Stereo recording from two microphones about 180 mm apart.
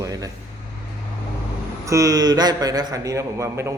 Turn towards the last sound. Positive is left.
turn(degrees=-15)  # may be behind; listen again after turning